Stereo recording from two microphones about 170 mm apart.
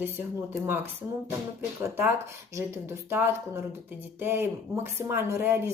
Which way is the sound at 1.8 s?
10° right (ahead or behind).